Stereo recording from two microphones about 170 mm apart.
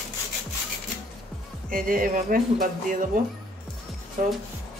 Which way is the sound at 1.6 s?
55° right (ahead or behind).